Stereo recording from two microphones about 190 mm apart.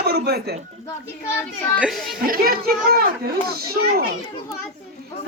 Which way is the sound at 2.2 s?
50° right (ahead or behind).